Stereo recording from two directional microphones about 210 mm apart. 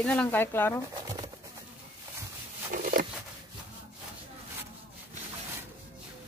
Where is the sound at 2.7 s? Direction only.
40° right (ahead or behind).